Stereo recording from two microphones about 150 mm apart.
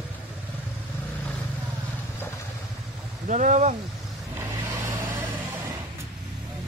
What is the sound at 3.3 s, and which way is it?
Speech, 55° right (ahead or behind).